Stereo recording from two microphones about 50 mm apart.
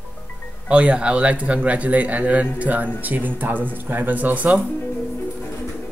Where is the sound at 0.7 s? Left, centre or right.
Right.